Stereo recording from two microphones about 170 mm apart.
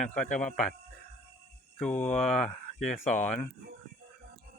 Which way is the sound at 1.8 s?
10° left (ahead or behind).